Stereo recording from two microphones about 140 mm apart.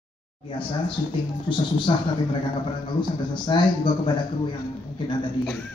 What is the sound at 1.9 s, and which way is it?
Speech, 35° left (ahead or behind).